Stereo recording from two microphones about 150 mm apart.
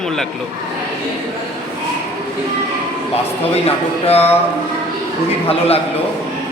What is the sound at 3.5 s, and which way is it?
Speech, 45° left (ahead or behind).